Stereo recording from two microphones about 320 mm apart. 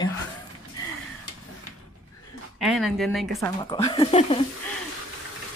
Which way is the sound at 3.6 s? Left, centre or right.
Centre.